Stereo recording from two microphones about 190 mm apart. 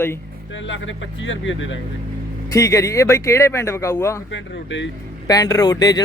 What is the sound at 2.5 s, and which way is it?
Speech, 15° left (ahead or behind).